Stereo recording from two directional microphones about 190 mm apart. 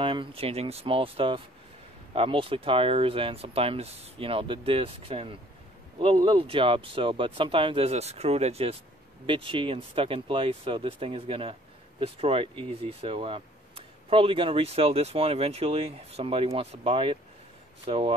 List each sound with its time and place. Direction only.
0.0 s speech: 25° right (ahead or behind)